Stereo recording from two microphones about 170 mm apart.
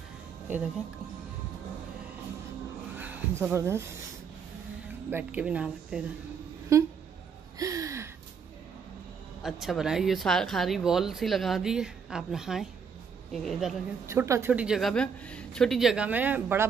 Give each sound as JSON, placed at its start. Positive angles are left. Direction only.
{"t": 3.0, "sound": "speech", "side_deg": -10}
{"t": 5.1, "sound": "a man's voice", "side_deg": -10}
{"t": 6.7, "sound": "a man's voice", "side_deg": -15}
{"t": 7.5, "sound": "a sound", "side_deg": -20}
{"t": 9.4, "sound": "speech", "side_deg": 0}
{"t": 14.0, "sound": "a man's voice", "side_deg": -15}